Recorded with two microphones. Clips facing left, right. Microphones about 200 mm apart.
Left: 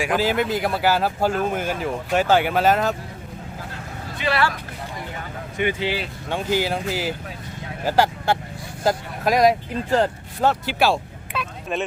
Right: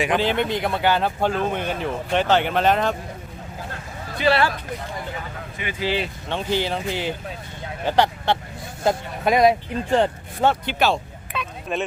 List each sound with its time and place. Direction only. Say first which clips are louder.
0.0 s speech: even; 5° left (ahead or behind)
4.2 s speech: right 4 dB; 30° right (ahead or behind)
5.6 s speech: left 9 dB; 55° left (ahead or behind)
6.0 s speech: even; 10° left (ahead or behind)